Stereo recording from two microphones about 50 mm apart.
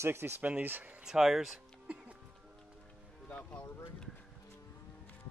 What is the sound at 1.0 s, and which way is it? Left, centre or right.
Speech, centre.